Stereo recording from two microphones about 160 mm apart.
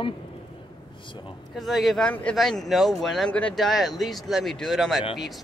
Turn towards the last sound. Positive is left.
turn(degrees=0)  # may be behind; listen again after turning